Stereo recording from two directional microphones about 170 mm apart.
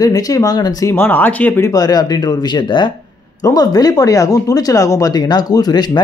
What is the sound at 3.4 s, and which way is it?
Speech, 20° left (ahead or behind).